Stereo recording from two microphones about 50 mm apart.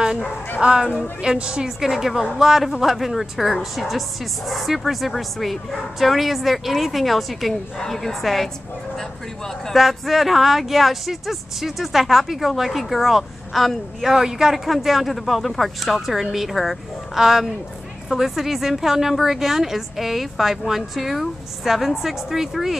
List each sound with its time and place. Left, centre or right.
0.6 s a woman's voice: centre
9.7 s a woman's voice: centre
14.1 s a woman's voice: centre